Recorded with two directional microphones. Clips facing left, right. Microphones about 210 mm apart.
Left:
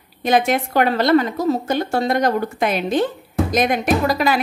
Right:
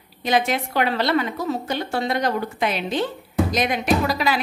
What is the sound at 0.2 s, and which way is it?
A woman's voice, 50° left (ahead or behind).